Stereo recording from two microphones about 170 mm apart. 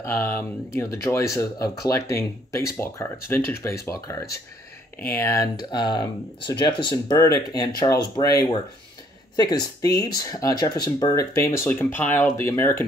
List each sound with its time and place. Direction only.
0.0 s speech: 15° left (ahead or behind)